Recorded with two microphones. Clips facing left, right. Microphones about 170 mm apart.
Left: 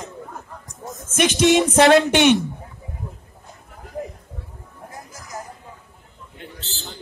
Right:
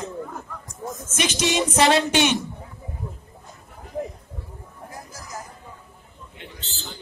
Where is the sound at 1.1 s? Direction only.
55° left (ahead or behind).